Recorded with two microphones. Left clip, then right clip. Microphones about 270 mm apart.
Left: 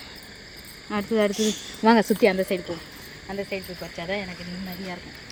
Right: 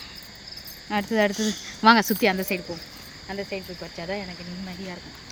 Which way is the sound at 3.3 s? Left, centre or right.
Centre.